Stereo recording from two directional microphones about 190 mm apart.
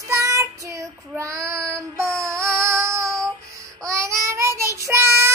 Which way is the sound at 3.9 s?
15° right (ahead or behind).